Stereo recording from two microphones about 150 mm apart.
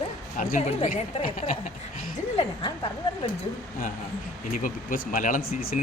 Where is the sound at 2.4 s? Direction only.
35° left (ahead or behind).